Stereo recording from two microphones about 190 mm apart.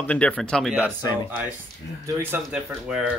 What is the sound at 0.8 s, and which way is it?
Speech, 20° left (ahead or behind).